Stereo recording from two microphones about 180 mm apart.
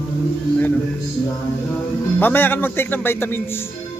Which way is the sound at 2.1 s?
10° left (ahead or behind).